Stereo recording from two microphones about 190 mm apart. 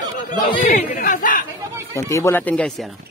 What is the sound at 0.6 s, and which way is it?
Speech, 45° left (ahead or behind).